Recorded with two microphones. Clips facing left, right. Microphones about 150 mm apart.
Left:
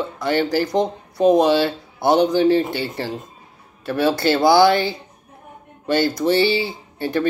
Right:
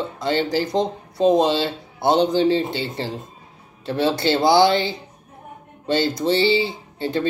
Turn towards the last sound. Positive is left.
turn(degrees=-20)  # may be behind; listen again after turning